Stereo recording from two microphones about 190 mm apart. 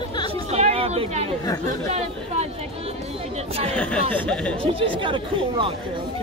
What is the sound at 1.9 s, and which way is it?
Chatter, 35° right (ahead or behind).